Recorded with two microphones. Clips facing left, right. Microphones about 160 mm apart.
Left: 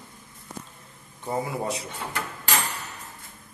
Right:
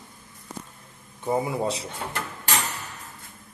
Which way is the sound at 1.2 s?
20° right (ahead or behind).